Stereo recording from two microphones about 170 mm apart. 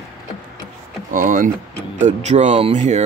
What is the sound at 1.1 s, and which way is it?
Speech, 50° right (ahead or behind).